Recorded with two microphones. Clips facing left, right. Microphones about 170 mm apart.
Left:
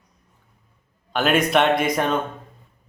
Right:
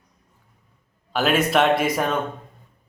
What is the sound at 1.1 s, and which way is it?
A man's voice, 5° right (ahead or behind).